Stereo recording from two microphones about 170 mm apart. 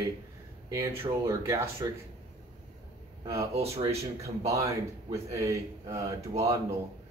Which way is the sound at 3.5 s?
35° right (ahead or behind).